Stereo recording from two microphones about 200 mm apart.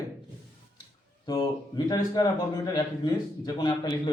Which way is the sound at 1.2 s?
20° left (ahead or behind).